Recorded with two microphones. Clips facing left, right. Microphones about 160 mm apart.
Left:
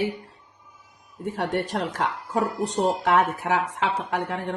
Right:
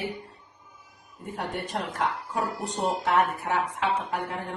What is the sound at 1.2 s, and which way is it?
A woman's voice, 80° left.